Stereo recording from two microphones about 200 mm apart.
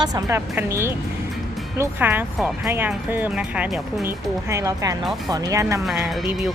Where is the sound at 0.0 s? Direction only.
15° right (ahead or behind).